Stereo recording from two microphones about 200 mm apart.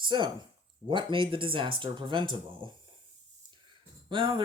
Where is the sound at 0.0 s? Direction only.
25° right (ahead or behind).